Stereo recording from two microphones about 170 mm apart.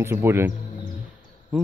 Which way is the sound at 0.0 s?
15° right (ahead or behind).